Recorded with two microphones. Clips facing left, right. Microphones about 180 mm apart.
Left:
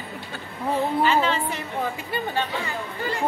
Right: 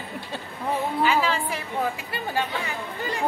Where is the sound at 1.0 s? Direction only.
5° right (ahead or behind).